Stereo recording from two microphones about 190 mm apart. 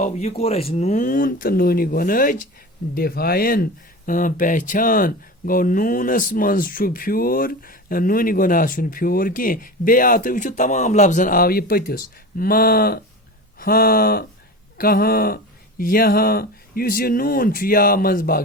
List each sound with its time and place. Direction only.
0.0 s speech: 35° left (ahead or behind); by 18.4 s 50° left (ahead or behind)